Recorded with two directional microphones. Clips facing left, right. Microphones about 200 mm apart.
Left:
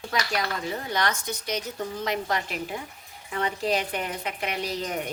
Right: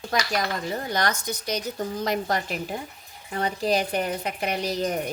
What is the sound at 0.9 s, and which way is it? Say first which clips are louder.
A woman's voice: right 1 dB; 40° right (ahead or behind).